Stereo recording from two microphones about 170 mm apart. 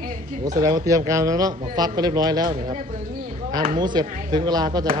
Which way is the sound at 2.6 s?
45° right (ahead or behind).